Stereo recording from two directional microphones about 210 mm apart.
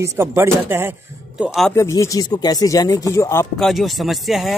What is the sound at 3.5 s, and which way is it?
Speech, centre (ahead or behind).